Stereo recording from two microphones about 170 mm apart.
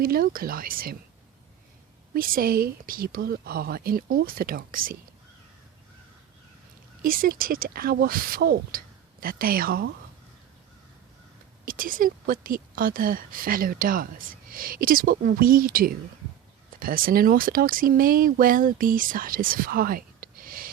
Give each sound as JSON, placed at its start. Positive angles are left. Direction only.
{"t": 0.0, "sound": "speech", "side_deg": -60}
{"t": 2.1, "sound": "speech", "side_deg": -55}
{"t": 7.0, "sound": "speech", "side_deg": -55}
{"t": 11.6, "sound": "speech", "side_deg": -55}